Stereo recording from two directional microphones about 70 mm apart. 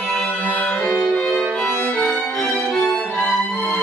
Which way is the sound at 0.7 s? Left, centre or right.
Centre.